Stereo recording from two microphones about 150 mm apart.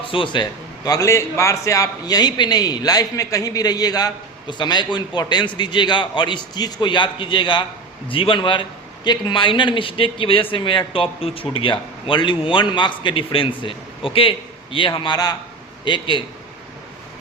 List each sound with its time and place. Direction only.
0.0 s a man's voice: 35° left (ahead or behind)
0.9 s a man's voice: 20° left (ahead or behind)